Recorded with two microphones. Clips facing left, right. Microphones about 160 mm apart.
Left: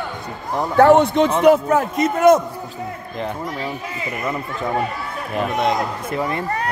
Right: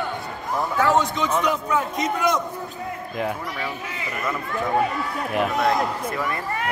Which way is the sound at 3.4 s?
35° left (ahead or behind).